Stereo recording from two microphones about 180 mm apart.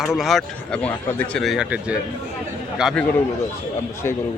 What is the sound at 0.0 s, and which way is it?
Speech, centre (ahead or behind).